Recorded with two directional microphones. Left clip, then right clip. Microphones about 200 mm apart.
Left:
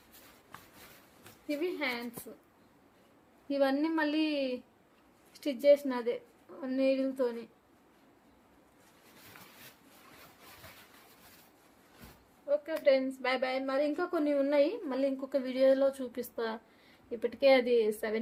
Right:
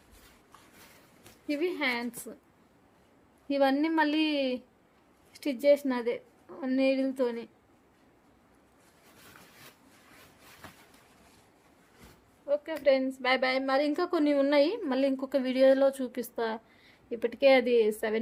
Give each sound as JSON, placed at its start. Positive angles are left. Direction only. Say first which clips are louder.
{"t": 1.5, "sound": "a woman's voice", "louder": "right 4 dB", "side_deg": -45}
{"t": 3.5, "sound": "a woman's voice", "louder": "right 3 dB", "side_deg": -45}
{"t": 12.8, "sound": "a woman's voice", "louder": "right 2 dB", "side_deg": -40}